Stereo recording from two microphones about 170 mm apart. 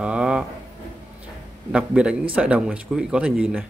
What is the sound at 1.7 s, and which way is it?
A man's voice, 5° right (ahead or behind).